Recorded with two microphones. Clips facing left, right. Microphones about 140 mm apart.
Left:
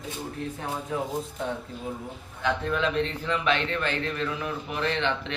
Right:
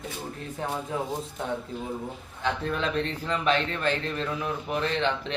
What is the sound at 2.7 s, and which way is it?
Speech, 40° right (ahead or behind).